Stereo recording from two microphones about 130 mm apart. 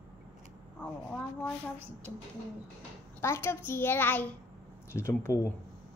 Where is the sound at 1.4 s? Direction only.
10° left (ahead or behind).